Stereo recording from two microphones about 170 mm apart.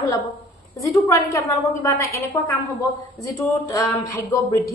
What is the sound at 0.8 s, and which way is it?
A woman's voice, 20° left (ahead or behind).